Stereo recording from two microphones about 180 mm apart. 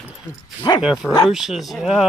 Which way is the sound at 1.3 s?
Centre (ahead or behind).